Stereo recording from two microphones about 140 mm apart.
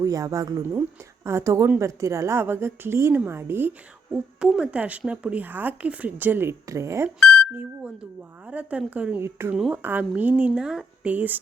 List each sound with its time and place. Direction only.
0.0 s a woman's voice: 25° right (ahead or behind)
7.2 s speech: 10° left (ahead or behind)
8.4 s a woman's voice: 10° right (ahead or behind)